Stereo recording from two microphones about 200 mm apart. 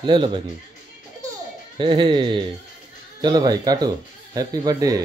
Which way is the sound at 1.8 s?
25° right (ahead or behind).